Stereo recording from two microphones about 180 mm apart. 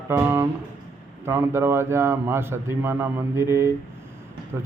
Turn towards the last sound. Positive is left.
turn(degrees=-15)  # may be behind; listen again after turning